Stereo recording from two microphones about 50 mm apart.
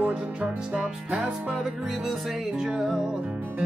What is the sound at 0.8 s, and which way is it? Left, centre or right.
Music, centre.